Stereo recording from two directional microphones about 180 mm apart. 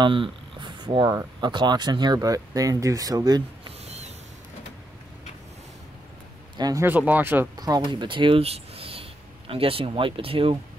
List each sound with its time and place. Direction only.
0.0 s speech: 25° right (ahead or behind)
3.8 s a sound: 35° right (ahead or behind)
6.5 s speech: 20° right (ahead or behind)
7.5 s speech: 20° right (ahead or behind)